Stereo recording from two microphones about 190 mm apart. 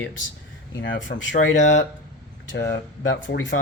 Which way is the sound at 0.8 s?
75° left (ahead or behind).